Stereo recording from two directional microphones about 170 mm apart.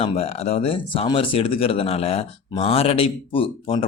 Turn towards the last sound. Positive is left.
turn(degrees=30)  # may be behind; listen again after turning